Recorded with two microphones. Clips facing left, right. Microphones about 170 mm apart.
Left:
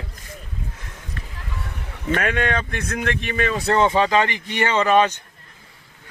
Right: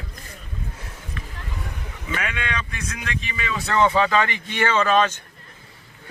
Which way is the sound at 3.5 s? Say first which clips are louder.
Left 2 dB; 35° left (ahead or behind).